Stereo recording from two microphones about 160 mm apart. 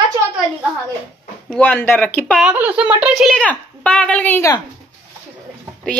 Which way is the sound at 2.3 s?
10° right (ahead or behind).